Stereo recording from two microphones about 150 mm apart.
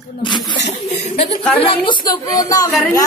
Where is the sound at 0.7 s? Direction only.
45° left (ahead or behind).